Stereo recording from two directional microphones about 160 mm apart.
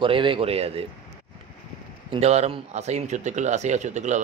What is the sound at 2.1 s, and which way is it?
Speech, 40° right (ahead or behind).